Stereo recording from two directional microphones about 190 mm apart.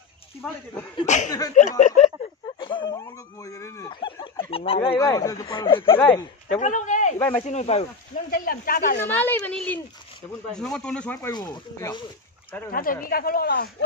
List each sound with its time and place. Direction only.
0.4 s speech: 5° left (ahead or behind)
1.0 s speech: 40° left (ahead or behind)
2.4 s dog: 25° left (ahead or behind)
4.9 s speech: 15° left (ahead or behind)
5.9 s a woman's voice: 10° left (ahead or behind)
6.5 s speech: 40° left (ahead or behind)
8.3 s speech: 50° left (ahead or behind)
9.0 s a woman's voice: 10° left (ahead or behind)
11.3 s speech: 20° left (ahead or behind)
12.7 s speech: 50° left (ahead or behind)